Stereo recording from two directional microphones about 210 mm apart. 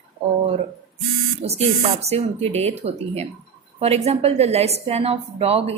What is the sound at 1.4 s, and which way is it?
A woman's voice, 30° right (ahead or behind).